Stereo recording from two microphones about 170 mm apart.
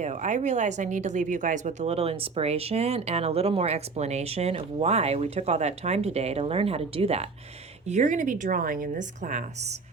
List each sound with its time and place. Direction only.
0.0 s a woman's voice: 45° right (ahead or behind)